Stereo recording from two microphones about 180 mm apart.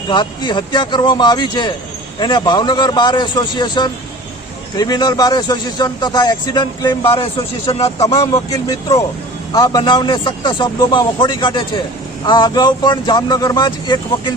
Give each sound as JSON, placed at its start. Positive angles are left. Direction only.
{"t": 0.1, "sound": "a man's voice", "side_deg": 25}
{"t": 8.1, "sound": "a man's voice", "side_deg": 20}